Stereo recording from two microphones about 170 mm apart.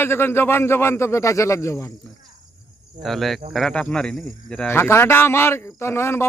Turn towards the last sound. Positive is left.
turn(degrees=15)  # may be behind; listen again after turning